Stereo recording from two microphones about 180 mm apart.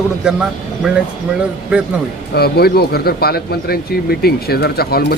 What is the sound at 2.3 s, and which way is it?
Speech, 60° left (ahead or behind).